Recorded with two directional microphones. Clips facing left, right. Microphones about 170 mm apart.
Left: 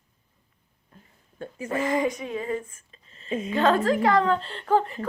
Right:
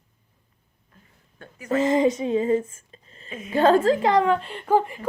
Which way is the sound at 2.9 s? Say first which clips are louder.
Right 5 dB; 35° right (ahead or behind).